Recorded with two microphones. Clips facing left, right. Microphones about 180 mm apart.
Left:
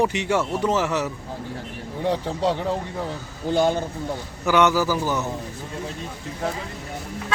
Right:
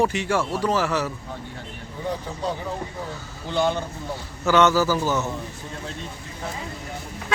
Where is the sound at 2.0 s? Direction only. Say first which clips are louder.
Left 5 dB; 85° left.